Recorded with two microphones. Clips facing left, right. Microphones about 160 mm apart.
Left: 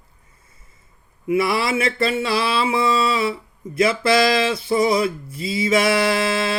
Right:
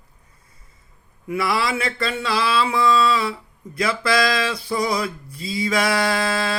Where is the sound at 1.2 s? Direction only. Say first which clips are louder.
Left 3 dB; 25° left (ahead or behind).